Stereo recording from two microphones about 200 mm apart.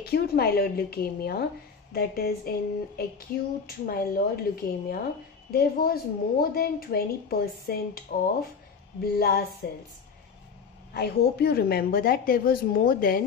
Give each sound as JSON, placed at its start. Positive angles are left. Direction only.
{"t": 0.0, "sound": "a woman's voice", "side_deg": 50}
{"t": 10.9, "sound": "a woman's voice", "side_deg": 50}